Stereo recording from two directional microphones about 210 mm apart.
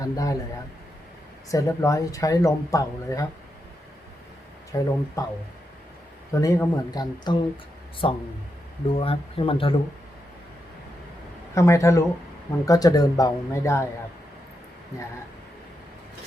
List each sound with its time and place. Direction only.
0.0 s speech: 15° left (ahead or behind)
1.5 s speech: 15° left (ahead or behind)
4.7 s speech: 15° left (ahead or behind)
6.3 s speech: 15° left (ahead or behind)
11.5 s speech: 15° left (ahead or behind)